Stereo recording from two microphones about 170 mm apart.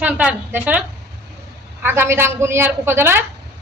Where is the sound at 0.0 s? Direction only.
5° right (ahead or behind).